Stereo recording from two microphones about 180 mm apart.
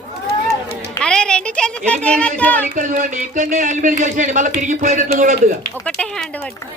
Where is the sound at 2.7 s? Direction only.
45° right (ahead or behind).